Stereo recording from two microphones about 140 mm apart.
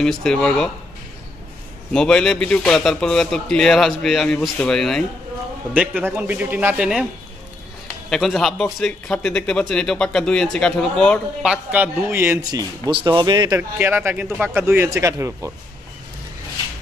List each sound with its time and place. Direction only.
0.0 s a man's voice: 5° left (ahead or behind)
1.9 s a man's voice: 5° left (ahead or behind)
5.8 s speech: 10° right (ahead or behind)
8.1 s a man's voice: centre (ahead or behind)
11.4 s speech: 10° right (ahead or behind)
12.4 s speech: 30° right (ahead or behind)
13.6 s speech: 15° right (ahead or behind)